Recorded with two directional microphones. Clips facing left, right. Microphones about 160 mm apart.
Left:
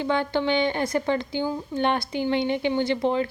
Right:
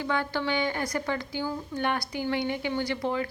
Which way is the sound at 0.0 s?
25° left (ahead or behind).